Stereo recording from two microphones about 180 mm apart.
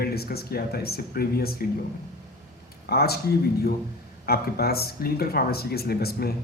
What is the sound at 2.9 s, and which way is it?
Speech, 60° left (ahead or behind).